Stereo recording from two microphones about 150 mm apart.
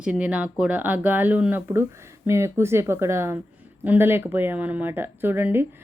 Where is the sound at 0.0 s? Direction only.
5° right (ahead or behind).